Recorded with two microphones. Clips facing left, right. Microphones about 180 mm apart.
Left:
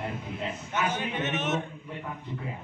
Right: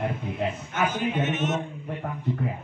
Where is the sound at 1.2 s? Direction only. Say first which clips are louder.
Right 2 dB; 65° left (ahead or behind).